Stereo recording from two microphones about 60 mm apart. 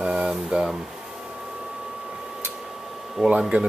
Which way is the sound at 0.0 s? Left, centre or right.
Centre.